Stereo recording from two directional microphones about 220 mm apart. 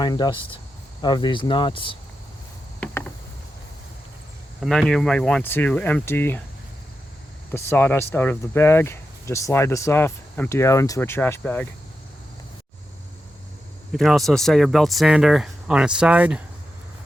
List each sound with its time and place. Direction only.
0.0 s speech: 20° left (ahead or behind)
2.8 s a sound: 5° left (ahead or behind)
4.6 s speech: centre (ahead or behind)
7.5 s speech: 10° left (ahead or behind)
13.9 s speech: centre (ahead or behind)